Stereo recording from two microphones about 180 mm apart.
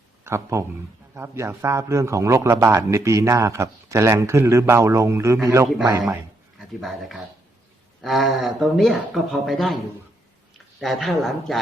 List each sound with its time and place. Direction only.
0.3 s a man's voice: 15° right (ahead or behind)
6.6 s speech: centre (ahead or behind)
10.8 s speech: centre (ahead or behind)